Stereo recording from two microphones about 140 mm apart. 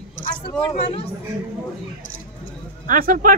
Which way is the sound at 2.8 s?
80° right.